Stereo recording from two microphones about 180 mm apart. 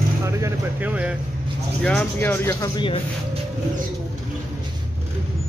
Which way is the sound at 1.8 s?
10° left (ahead or behind).